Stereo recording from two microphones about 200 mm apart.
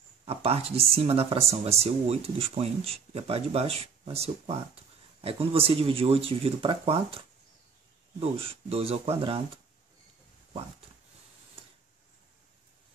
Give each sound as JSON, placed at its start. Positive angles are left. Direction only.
{"t": 0.2, "sound": "speech", "side_deg": -30}